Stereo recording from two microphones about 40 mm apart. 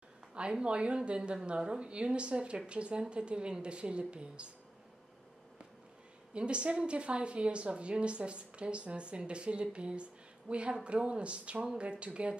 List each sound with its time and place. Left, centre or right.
0.3 s a woman's voice: right
6.3 s a woman's voice: right